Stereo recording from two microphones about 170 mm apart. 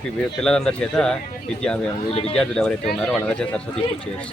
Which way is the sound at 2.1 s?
35° left (ahead or behind).